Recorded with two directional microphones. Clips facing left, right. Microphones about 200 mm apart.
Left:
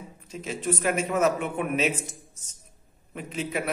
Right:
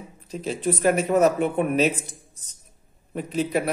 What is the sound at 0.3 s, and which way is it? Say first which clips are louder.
A man's voice: right 4 dB; 35° right (ahead or behind).